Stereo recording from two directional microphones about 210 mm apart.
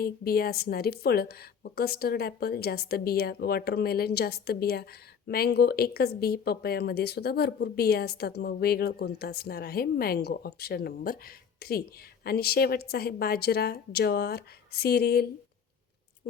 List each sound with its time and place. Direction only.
0.0 s speech: 45° left (ahead or behind)